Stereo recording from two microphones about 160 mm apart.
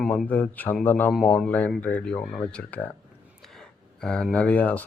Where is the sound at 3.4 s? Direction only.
5° left (ahead or behind).